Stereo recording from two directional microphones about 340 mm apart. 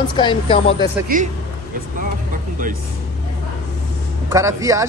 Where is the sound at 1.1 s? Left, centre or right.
Right.